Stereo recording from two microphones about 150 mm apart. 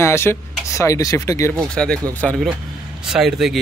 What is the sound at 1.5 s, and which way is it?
Speech, 5° left (ahead or behind).